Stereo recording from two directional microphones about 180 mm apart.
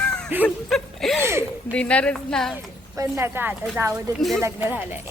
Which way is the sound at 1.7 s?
5° left (ahead or behind).